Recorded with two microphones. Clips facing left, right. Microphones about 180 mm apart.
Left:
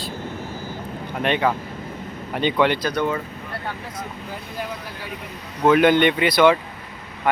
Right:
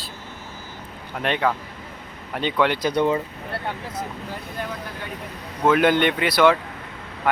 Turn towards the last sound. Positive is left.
turn(degrees=-5)  # may be behind; listen again after turning